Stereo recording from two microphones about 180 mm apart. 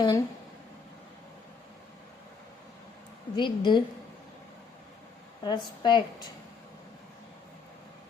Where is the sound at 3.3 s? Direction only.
25° left (ahead or behind).